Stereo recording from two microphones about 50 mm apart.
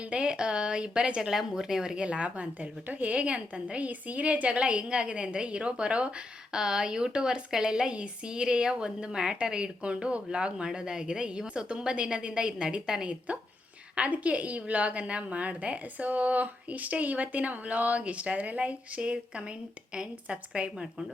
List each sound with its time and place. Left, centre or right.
0.1 s a woman's voice: centre
1.3 s a woman's voice: centre